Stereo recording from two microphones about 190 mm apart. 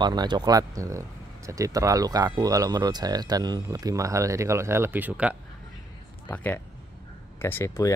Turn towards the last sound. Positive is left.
turn(degrees=15)  # may be behind; listen again after turning